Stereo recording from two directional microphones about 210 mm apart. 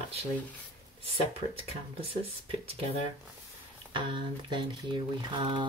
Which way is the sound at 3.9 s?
25° right (ahead or behind).